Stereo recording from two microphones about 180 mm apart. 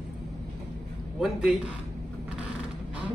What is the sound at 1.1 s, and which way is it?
Speech, 5° right (ahead or behind).